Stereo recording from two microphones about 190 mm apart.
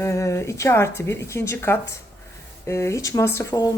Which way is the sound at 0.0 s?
15° left (ahead or behind).